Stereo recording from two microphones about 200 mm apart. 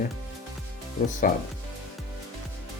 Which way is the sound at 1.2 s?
45° left (ahead or behind).